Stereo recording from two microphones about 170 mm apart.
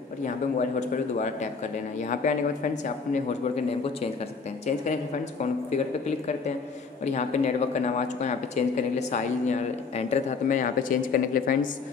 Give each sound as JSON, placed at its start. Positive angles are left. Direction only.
{"t": 0.2, "sound": "speech", "side_deg": 45}
{"t": 6.0, "sound": "speech", "side_deg": 40}